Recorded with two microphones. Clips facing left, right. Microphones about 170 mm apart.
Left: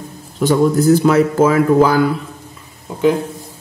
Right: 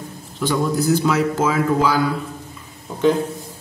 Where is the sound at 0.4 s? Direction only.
50° left (ahead or behind).